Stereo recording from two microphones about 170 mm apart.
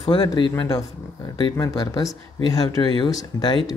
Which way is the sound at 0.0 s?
25° left (ahead or behind).